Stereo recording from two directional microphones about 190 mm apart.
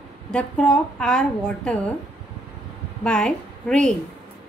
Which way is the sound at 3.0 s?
5° left (ahead or behind).